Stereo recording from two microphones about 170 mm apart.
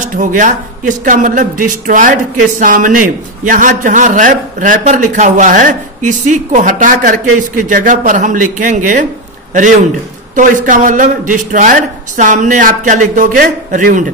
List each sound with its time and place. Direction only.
0.0 s a man's voice: 50° right (ahead or behind)